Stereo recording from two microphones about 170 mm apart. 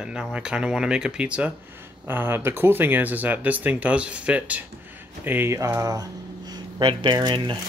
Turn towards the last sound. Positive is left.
turn(degrees=-30)  # may be behind; listen again after turning